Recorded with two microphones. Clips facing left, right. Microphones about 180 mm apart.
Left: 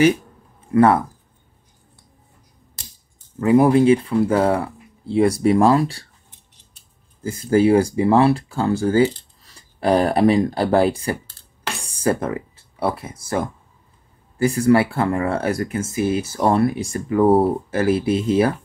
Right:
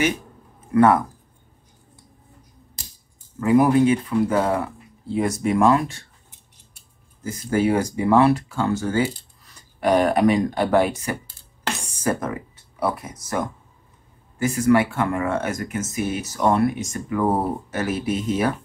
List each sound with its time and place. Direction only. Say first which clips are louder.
0.7 s speech: left 1 dB; 30° left (ahead or behind)
3.3 s speech: left 2 dB; 30° left (ahead or behind)
7.2 s speech: left 5 dB; 30° left (ahead or behind)